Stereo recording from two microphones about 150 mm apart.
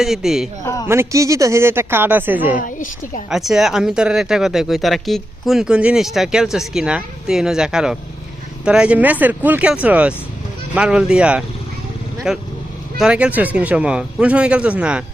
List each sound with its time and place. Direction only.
0.0 s speech: centre (ahead or behind)
0.6 s a sound: 20° left (ahead or behind)
0.9 s speech: 20° right (ahead or behind)
2.6 s a woman's voice: 60° left (ahead or behind)
3.2 s speech: 5° right (ahead or behind)